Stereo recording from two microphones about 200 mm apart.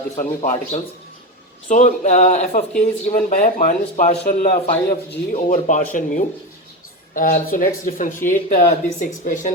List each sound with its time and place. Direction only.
0.2 s speech: 40° left (ahead or behind)